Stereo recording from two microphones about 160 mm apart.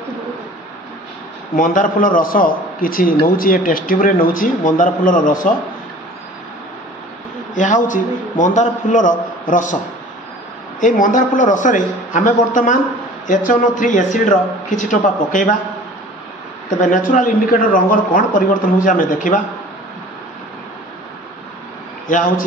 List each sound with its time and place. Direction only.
1.6 s a man's voice: 55° left (ahead or behind)
7.5 s a man's voice: 50° left (ahead or behind)
10.8 s a man's voice: 55° left (ahead or behind)
13.3 s a man's voice: 55° left (ahead or behind)
16.7 s a man's voice: 55° left (ahead or behind)